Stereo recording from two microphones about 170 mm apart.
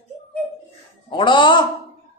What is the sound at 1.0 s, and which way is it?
Speech, 30° left (ahead or behind).